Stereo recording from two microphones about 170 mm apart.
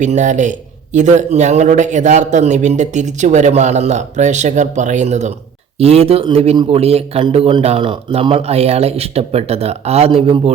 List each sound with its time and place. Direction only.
0.0 s a man's voice: 45° right (ahead or behind)